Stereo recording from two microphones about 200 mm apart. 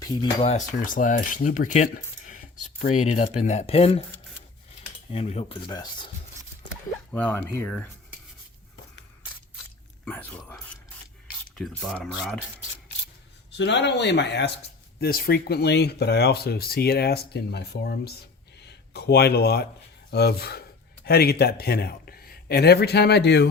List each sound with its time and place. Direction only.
0.0 s speech: 25° left (ahead or behind)
0.9 s cutlery: 40° left (ahead or behind)
5.1 s speech: 30° left (ahead or behind)
7.1 s speech: 10° left (ahead or behind)
10.1 s speech: 5° left (ahead or behind)
11.9 s speech: 5° left (ahead or behind)
13.5 s speech: 60° left (ahead or behind)